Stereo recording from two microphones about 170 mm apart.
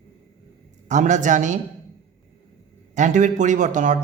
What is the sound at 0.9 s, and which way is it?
Speech, 45° right (ahead or behind).